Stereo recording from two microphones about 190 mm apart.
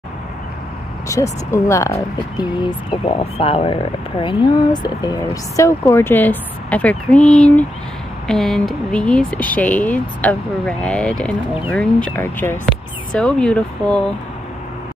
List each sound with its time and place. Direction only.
1.0 s speech: 15° left (ahead or behind)